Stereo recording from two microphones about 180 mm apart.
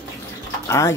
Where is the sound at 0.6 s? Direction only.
15° left (ahead or behind).